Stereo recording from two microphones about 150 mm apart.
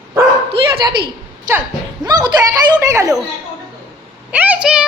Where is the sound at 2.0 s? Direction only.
25° right (ahead or behind).